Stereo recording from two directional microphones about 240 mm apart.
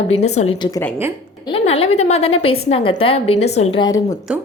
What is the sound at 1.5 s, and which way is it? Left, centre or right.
A woman's voice, left.